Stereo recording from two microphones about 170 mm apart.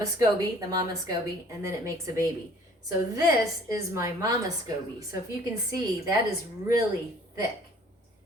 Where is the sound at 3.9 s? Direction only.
20° right (ahead or behind).